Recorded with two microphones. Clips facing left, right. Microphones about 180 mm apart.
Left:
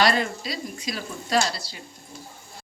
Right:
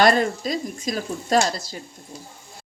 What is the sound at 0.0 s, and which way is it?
Speech, 45° right (ahead or behind).